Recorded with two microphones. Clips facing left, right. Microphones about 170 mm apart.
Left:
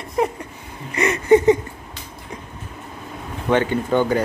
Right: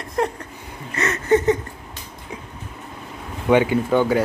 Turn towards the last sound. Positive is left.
turn(degrees=-5)  # may be behind; listen again after turning